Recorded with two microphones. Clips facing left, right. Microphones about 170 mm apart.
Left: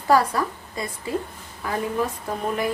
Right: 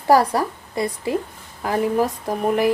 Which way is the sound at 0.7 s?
70° right (ahead or behind).